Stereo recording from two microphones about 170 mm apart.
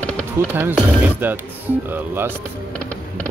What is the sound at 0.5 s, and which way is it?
Speech, 10° right (ahead or behind).